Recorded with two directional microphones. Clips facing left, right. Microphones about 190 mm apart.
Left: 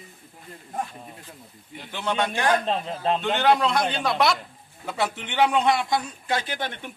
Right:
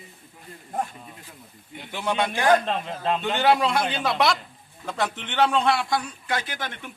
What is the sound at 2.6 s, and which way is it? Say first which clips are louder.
Speech: left 1 dB; 30° left (ahead or behind).